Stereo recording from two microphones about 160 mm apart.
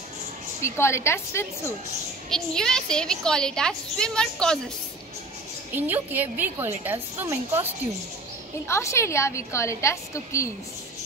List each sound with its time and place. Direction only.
0.6 s a woman's voice: 15° left (ahead or behind)
2.2 s a woman's voice: 5° left (ahead or behind)
5.8 s a woman's voice: 10° right (ahead or behind)
8.6 s a woman's voice: 15° left (ahead or behind)